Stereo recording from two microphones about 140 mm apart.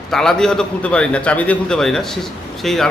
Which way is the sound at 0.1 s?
5° left (ahead or behind).